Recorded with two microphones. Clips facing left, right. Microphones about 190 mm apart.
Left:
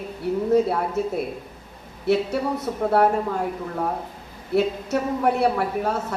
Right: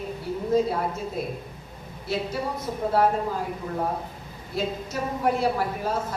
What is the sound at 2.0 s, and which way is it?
A woman's voice, 70° left (ahead or behind).